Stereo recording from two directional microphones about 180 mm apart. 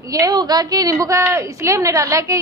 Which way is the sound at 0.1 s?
20° right (ahead or behind).